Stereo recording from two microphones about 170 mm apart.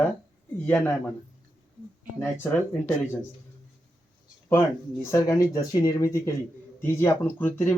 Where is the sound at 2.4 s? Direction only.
10° left (ahead or behind).